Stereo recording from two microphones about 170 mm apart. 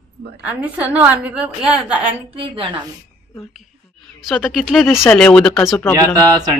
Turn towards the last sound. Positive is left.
turn(degrees=-20)  # may be behind; listen again after turning